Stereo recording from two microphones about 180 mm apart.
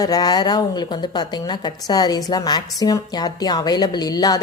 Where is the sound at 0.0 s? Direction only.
20° left (ahead or behind).